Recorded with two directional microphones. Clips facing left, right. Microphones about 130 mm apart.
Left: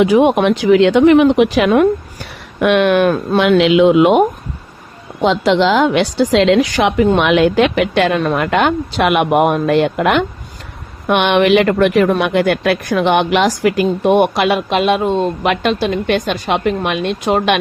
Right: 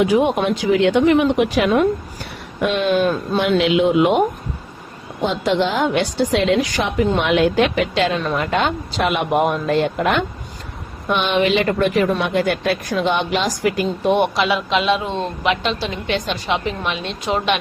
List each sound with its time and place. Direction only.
0.0 s a woman's voice: 90° left
5.2 s a woman's voice: 90° left; by 17.6 s 55° left (ahead or behind)